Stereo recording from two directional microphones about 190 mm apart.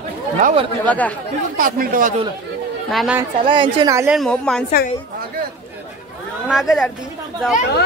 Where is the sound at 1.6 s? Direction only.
50° right (ahead or behind).